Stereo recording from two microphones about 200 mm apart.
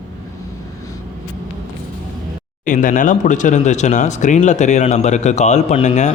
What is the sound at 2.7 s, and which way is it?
Speech, 40° left (ahead or behind).